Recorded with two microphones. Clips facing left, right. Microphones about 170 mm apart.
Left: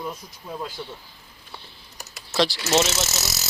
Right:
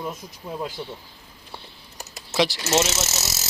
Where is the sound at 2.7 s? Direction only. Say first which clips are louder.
Left 1 dB; 5° right (ahead or behind).